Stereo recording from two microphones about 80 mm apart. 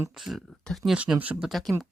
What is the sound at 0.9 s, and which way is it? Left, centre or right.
Speech, centre.